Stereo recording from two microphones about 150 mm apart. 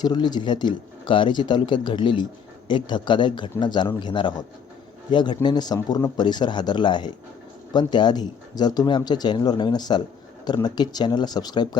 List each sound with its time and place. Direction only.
0.0 s speech: 30° left (ahead or behind)